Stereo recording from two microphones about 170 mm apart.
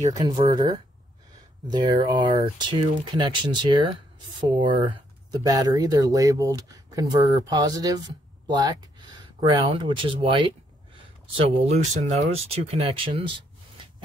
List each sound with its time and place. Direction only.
0.2 s speech: 25° right (ahead or behind)
1.7 s speech: 25° right (ahead or behind)
11.6 s speech: 40° right (ahead or behind)